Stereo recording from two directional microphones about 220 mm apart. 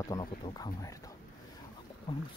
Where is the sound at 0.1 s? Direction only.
15° left (ahead or behind).